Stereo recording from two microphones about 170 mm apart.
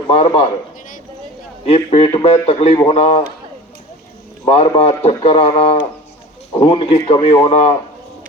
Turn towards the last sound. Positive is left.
turn(degrees=35)  # may be behind; listen again after turning